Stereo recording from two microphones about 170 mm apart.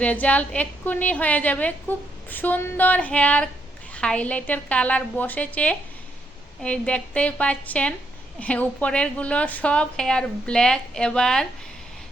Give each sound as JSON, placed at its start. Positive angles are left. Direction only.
{"t": 0.0, "sound": "a woman's voice", "side_deg": 10}